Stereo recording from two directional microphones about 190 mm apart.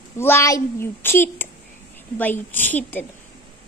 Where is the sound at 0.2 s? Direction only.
15° left (ahead or behind).